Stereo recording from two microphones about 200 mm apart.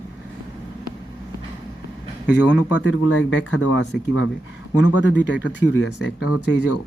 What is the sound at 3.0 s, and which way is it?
Speech, 80° left.